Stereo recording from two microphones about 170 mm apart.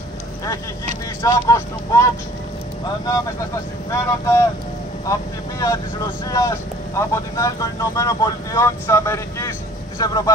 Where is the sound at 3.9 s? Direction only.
15° left (ahead or behind).